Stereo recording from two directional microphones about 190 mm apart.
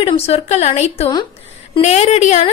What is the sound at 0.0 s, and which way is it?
A woman's voice, 30° left (ahead or behind).